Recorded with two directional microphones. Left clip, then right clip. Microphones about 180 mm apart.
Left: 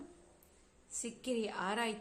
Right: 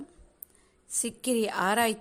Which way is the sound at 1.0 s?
50° right (ahead or behind).